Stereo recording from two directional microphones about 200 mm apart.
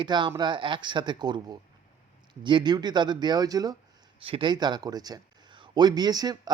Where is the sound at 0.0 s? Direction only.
25° right (ahead or behind).